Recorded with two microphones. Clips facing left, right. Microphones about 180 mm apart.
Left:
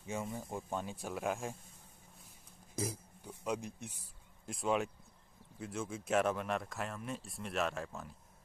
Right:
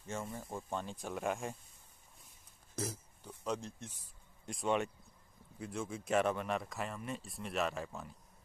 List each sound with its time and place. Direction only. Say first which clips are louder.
0.0 s speech: left 2 dB; 5° left (ahead or behind)
2.7 s speech: left 1 dB; 10° left (ahead or behind)
4.5 s speech: even; centre (ahead or behind)